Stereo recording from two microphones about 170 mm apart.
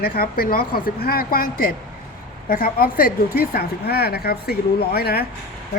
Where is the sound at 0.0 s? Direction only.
60° left (ahead or behind).